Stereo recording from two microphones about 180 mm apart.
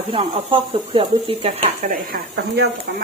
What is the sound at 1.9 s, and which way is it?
Speech, 55° right (ahead or behind).